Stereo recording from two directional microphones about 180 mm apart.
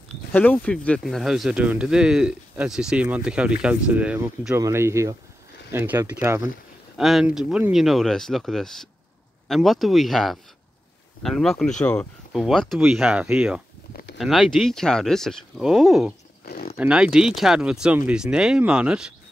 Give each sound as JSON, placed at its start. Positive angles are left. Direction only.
{"t": 0.3, "sound": "speech", "side_deg": 10}
{"t": 7.0, "sound": "speech", "side_deg": 0}
{"t": 16.4, "sound": "a sound", "side_deg": 55}
{"t": 16.7, "sound": "speech", "side_deg": -5}